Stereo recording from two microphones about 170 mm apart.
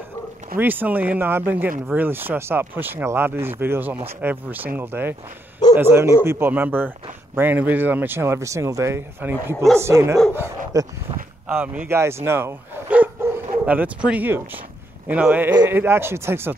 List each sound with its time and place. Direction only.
0.6 s speech: 10° right (ahead or behind)
11.4 s speech: 10° right (ahead or behind)